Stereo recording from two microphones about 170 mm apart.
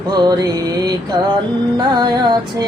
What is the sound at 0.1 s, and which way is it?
Mantra, 25° right (ahead or behind).